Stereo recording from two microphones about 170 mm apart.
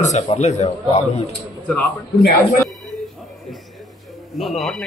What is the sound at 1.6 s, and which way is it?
Speech, 10° left (ahead or behind).